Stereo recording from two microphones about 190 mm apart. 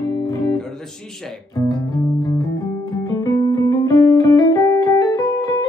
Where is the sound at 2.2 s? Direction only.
20° left (ahead or behind).